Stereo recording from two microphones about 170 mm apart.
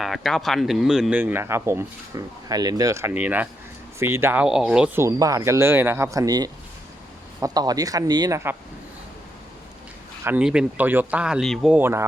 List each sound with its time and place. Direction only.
0.0 s speech: centre (ahead or behind)
5.0 s speech: 20° right (ahead or behind)
10.2 s speech: 5° right (ahead or behind)
11.8 s speech: 15° right (ahead or behind)